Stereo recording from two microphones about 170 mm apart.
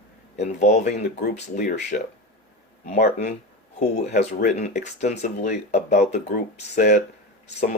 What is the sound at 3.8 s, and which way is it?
Speech, 40° left (ahead or behind).